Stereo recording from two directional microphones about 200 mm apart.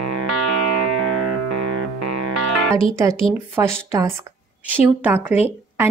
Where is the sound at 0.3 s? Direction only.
90° right.